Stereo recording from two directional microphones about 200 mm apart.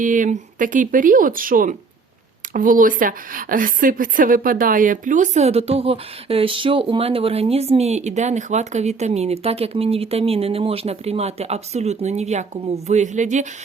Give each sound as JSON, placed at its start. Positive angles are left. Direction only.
{"t": 0.0, "sound": "a woman's voice", "side_deg": -40}